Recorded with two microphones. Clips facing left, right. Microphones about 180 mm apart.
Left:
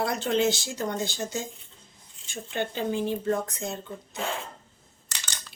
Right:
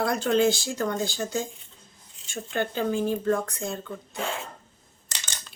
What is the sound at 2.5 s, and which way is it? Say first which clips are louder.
Speech: right 2 dB; 15° left (ahead or behind).